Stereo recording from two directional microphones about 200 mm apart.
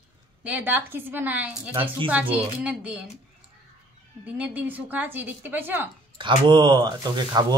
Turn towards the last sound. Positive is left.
turn(degrees=-20)  # may be behind; listen again after turning